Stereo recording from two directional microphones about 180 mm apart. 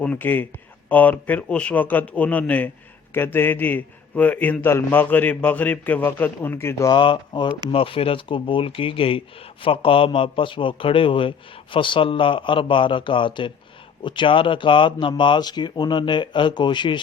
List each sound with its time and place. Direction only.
0.0 s a man's voice: 10° left (ahead or behind); by 17.0 s 25° left (ahead or behind)